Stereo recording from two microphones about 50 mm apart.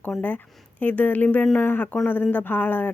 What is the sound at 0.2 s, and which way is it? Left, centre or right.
Speech, left.